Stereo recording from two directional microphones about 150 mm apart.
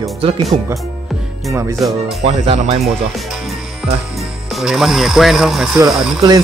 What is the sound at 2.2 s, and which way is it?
Speech, 45° right (ahead or behind).